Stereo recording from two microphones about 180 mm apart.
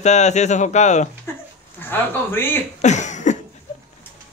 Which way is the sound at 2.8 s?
40° left (ahead or behind).